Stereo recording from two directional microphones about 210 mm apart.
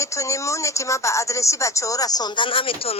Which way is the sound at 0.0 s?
15° left (ahead or behind).